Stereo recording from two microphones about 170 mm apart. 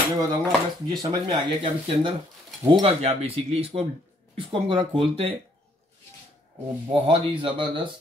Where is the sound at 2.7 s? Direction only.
30° right (ahead or behind).